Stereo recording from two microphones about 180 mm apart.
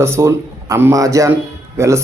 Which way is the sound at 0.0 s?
15° right (ahead or behind).